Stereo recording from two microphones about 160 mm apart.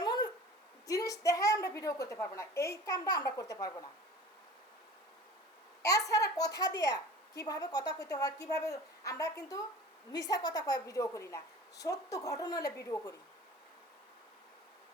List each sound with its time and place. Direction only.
0.0 s a sound: 30° left (ahead or behind)
0.9 s a woman's voice: 20° left (ahead or behind)
5.8 s a woman's voice: 20° left (ahead or behind)